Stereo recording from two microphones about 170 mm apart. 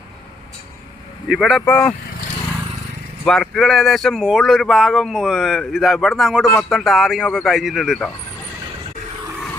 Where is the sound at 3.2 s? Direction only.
5° left (ahead or behind).